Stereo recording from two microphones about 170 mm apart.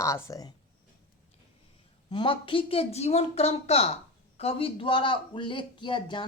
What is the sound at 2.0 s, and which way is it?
A woman's voice, 30° left (ahead or behind).